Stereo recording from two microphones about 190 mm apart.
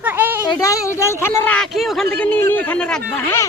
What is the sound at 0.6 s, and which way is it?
Speech, 15° left (ahead or behind).